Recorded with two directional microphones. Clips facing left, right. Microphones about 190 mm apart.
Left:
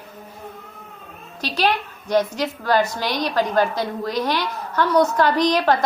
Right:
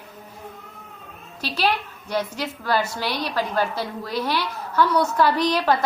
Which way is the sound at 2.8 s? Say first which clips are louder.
Left 4 dB; 10° right (ahead or behind).